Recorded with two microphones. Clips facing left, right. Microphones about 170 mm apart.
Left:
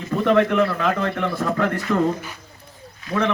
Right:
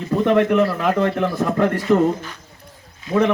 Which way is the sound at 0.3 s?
15° right (ahead or behind).